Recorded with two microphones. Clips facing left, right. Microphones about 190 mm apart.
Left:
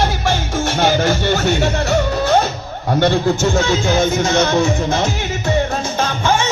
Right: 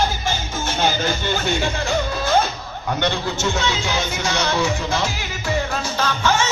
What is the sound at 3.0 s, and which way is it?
Speech, 45° left (ahead or behind).